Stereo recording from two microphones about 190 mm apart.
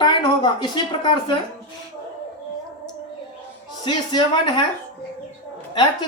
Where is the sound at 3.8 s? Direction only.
25° left (ahead or behind).